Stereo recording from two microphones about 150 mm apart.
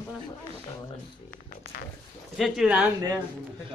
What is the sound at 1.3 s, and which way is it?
Speech, 90° left.